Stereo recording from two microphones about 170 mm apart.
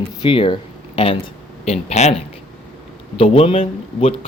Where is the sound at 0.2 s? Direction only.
30° left (ahead or behind).